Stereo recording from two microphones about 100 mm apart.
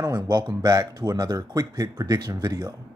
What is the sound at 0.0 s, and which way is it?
Speech, 35° right (ahead or behind).